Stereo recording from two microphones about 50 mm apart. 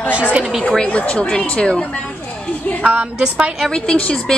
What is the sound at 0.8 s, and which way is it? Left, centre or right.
A woman's voice, left.